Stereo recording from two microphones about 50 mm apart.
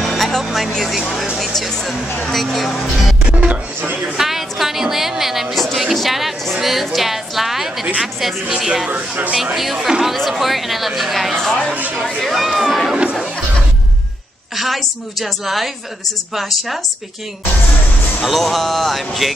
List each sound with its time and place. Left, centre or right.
0.0 s music: centre
0.8 s a woman's voice: centre
3.3 s music: right
4.2 s a woman's voice: centre
8.9 s speech: right
9.6 s a woman's voice: centre
11.4 s speech: centre
11.7 s speech: right
12.2 s a woman's voice: centre
14.6 s a woman's voice: centre
18.2 s a woman's voice: centre